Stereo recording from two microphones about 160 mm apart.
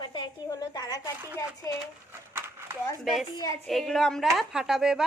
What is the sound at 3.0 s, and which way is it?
A woman's voice, centre (ahead or behind).